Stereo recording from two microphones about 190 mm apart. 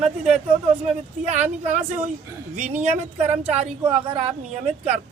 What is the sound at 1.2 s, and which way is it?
A woman's voice, 40° right (ahead or behind).